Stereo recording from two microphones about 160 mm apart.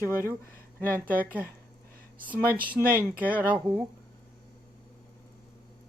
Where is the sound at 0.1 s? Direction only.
15° left (ahead or behind).